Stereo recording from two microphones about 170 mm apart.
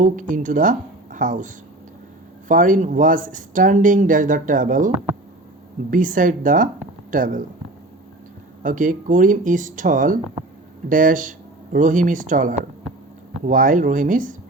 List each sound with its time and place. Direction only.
0.0 s speech: 50° right (ahead or behind)
8.6 s speech: 50° right (ahead or behind)